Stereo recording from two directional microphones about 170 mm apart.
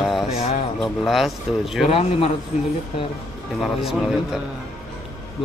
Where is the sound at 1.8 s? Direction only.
35° left (ahead or behind).